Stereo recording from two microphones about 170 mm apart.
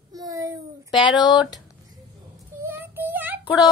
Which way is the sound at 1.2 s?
25° left (ahead or behind).